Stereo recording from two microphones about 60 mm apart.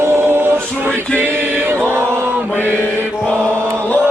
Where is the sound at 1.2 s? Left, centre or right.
Right.